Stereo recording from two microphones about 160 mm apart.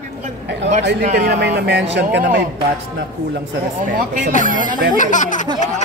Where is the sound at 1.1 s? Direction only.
80° right.